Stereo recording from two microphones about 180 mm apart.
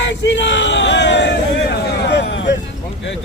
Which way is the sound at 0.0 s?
85° left.